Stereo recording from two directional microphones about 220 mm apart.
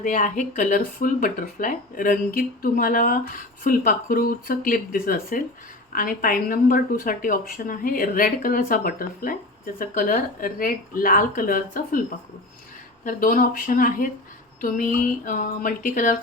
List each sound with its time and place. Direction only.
0.0 s speech: 35° left (ahead or behind)
13.1 s speech: 40° left (ahead or behind)